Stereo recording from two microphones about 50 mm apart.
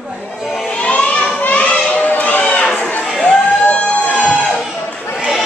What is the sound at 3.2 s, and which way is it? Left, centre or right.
Music, left.